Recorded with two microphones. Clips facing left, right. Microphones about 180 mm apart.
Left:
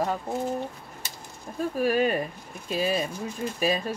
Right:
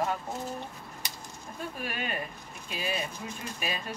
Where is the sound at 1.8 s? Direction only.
40° left (ahead or behind).